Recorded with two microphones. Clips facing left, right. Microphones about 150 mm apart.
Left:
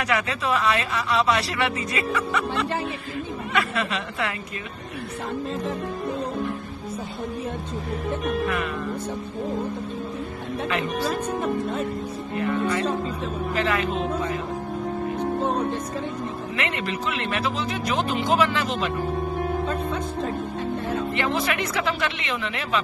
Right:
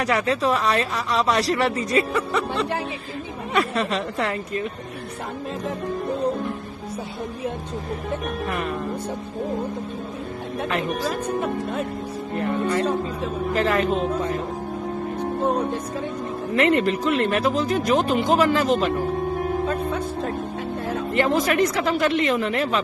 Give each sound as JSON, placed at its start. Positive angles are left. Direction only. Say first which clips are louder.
{"t": 0.0, "sound": "speech", "louder": "right 4 dB", "side_deg": -35}
{"t": 3.7, "sound": "speech", "louder": "right 3 dB", "side_deg": -35}
{"t": 12.4, "sound": "speech", "louder": "right 1 dB", "side_deg": -45}
{"t": 16.5, "sound": "speech", "louder": "right 11 dB", "side_deg": -45}
{"t": 19.7, "sound": "speech", "louder": "right 2 dB", "side_deg": -5}
{"t": 21.1, "sound": "speech", "louder": "right 9 dB", "side_deg": -45}